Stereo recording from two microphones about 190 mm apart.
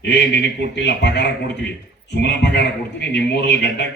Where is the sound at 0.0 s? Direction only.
65° left (ahead or behind).